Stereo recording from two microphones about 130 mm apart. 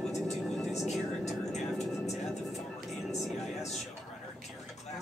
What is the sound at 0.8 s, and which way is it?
Vehicle, 60° left (ahead or behind).